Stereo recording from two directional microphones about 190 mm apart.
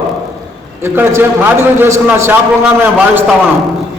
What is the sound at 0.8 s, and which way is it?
A man's voice, 10° right (ahead or behind).